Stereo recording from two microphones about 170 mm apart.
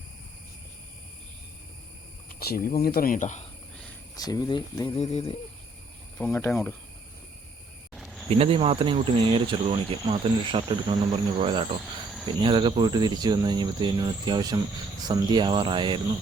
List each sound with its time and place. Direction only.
2.4 s speech: 60° left (ahead or behind)
4.1 s speech: 20° left (ahead or behind)
4.9 s a sound: 35° left (ahead or behind)
6.1 s speech: 15° left (ahead or behind)
7.9 s cricket: centre (ahead or behind)
8.3 s speech: 35° right (ahead or behind)